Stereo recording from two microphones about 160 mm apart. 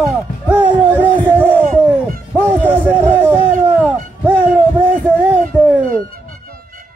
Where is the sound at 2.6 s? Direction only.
10° right (ahead or behind).